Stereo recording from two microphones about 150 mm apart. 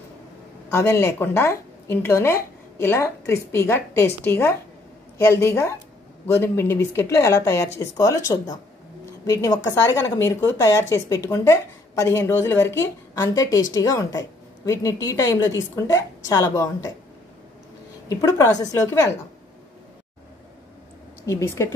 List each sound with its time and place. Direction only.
0.7 s a woman's voice: 15° left (ahead or behind)
18.0 s a woman's voice: 20° left (ahead or behind)
21.3 s a woman's voice: 20° left (ahead or behind)